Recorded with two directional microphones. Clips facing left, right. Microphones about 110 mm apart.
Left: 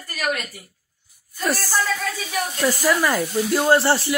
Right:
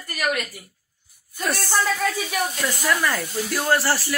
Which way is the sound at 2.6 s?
35° left (ahead or behind).